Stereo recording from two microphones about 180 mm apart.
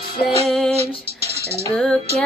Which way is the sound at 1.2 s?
15° right (ahead or behind).